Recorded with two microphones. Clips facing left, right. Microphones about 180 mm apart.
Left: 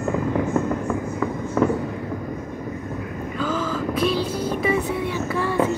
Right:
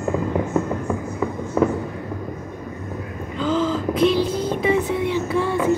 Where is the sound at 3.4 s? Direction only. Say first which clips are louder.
Right 4 dB; 25° right (ahead or behind).